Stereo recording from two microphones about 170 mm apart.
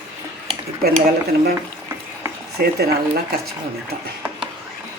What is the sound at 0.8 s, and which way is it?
Speech, 65° right (ahead or behind).